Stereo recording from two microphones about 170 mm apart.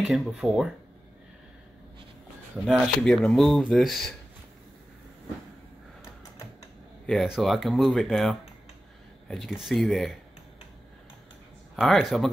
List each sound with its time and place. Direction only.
0.0 s speech: centre (ahead or behind)
2.7 s speech: 5° left (ahead or behind)
7.1 s speech: centre (ahead or behind)
11.7 s speech: centre (ahead or behind)